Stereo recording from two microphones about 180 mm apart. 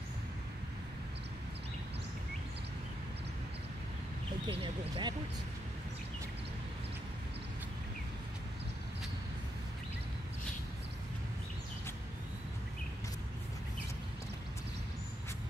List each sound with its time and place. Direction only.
4.5 s speech: 30° right (ahead or behind)